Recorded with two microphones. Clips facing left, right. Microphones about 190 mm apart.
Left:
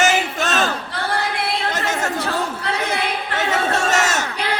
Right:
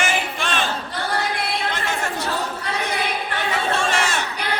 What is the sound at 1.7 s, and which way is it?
Chatter, 45° left (ahead or behind).